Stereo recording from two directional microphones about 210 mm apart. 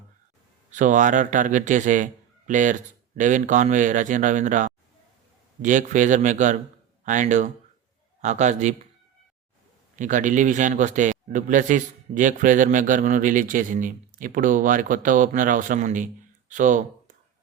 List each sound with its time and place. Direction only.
0.7 s a man's voice: 35° right (ahead or behind)
9.9 s a man's voice: 35° right (ahead or behind)